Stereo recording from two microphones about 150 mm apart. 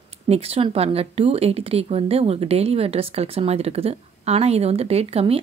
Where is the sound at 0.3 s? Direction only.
40° right (ahead or behind).